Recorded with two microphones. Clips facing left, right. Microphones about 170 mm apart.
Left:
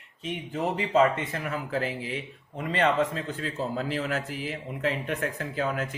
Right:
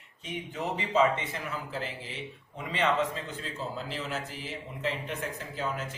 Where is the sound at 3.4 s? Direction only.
60° left (ahead or behind).